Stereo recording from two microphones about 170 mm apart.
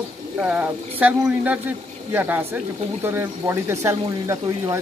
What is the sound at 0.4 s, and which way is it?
Speech, 10° right (ahead or behind).